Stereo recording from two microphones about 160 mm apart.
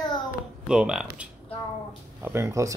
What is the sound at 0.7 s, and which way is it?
Speech, 5° right (ahead or behind).